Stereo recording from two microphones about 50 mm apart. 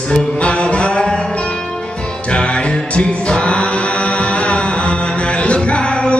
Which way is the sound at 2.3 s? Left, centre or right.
Left.